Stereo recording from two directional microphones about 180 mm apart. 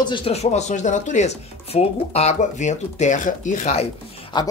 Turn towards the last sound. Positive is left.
turn(degrees=35)  # may be behind; listen again after turning